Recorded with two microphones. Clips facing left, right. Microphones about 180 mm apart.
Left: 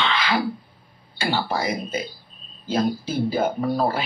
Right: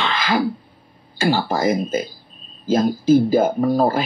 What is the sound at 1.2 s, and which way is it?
Speech, 45° right (ahead or behind).